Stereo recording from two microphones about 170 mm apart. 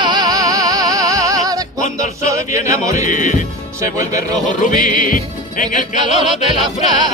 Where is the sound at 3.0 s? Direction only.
50° left (ahead or behind).